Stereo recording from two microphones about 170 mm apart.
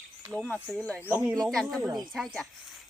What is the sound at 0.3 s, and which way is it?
Speech, 5° left (ahead or behind).